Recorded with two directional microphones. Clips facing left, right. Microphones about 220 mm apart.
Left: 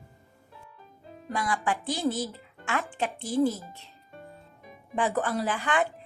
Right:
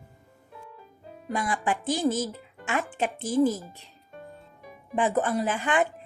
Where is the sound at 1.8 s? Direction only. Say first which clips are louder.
Right 3 dB; 20° right (ahead or behind).